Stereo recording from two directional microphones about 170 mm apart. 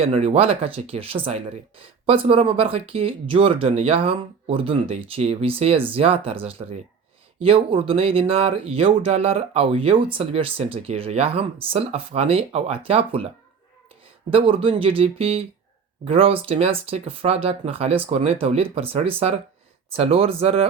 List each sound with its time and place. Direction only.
0.0 s speech: 35° right (ahead or behind)
14.3 s speech: 30° right (ahead or behind)